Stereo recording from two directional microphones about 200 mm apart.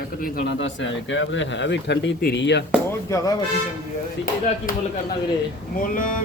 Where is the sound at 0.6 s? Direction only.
65° left (ahead or behind).